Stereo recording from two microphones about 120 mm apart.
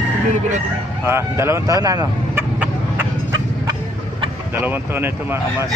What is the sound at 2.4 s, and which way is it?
Chicken, 15° right (ahead or behind).